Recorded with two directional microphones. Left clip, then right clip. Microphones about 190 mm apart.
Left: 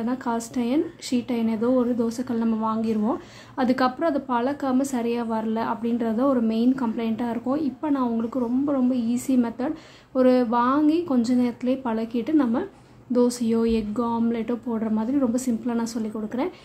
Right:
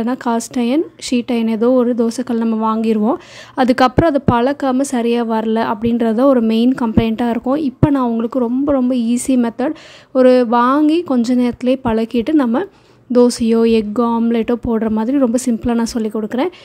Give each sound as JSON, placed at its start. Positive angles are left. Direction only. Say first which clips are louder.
{"t": 0.0, "sound": "speech", "louder": "right 9 dB", "side_deg": -45}